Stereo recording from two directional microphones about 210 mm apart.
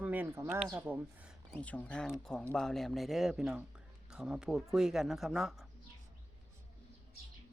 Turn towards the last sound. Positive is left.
turn(degrees=0)  # may be behind; listen again after turning